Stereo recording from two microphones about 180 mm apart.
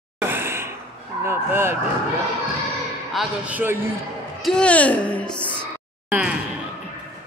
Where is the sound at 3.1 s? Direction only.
10° right (ahead or behind).